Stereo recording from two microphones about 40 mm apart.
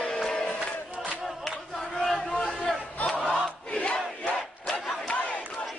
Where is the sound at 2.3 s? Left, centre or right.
Left.